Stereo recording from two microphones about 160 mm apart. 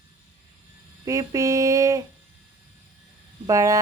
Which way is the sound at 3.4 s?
20° right (ahead or behind).